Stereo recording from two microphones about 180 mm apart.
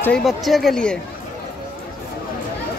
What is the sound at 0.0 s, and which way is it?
Speech, centre (ahead or behind).